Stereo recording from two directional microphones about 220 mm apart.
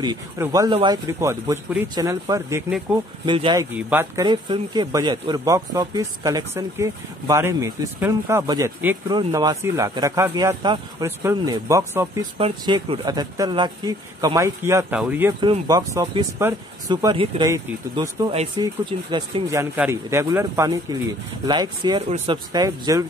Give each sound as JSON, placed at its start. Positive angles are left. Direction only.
{"t": 0.0, "sound": "a man's voice", "side_deg": -15}
{"t": 3.7, "sound": "a man's voice", "side_deg": -10}
{"t": 4.2, "sound": "a man's voice", "side_deg": -20}
{"t": 12.4, "sound": "a man's voice", "side_deg": -25}
{"t": 15.4, "sound": "a man's voice", "side_deg": -20}